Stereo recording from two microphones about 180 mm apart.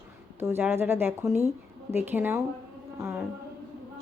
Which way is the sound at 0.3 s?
15° right (ahead or behind).